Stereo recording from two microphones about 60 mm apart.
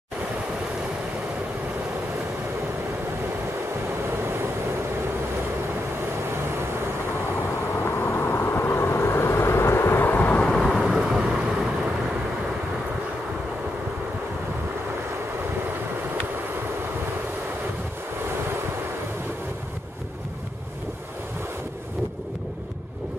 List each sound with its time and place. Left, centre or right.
8.1 s vehicle: left
10.5 s thunder: centre
11.1 s vehicle: centre